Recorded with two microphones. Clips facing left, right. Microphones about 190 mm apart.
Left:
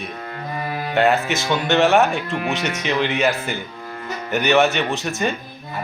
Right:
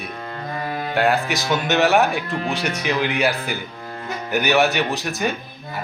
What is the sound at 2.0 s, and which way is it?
Speech, 15° right (ahead or behind).